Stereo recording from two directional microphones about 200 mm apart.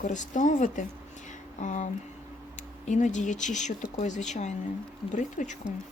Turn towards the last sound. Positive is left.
turn(degrees=40)  # may be behind; listen again after turning